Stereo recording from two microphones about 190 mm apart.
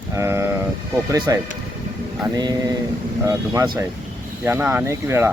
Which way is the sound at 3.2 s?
15° right (ahead or behind).